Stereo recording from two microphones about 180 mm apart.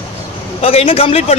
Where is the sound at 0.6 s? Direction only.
30° left (ahead or behind).